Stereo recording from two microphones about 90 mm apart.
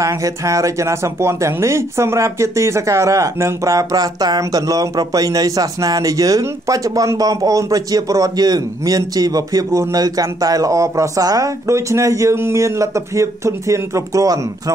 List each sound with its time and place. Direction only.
0.0 s speech: 35° right (ahead or behind)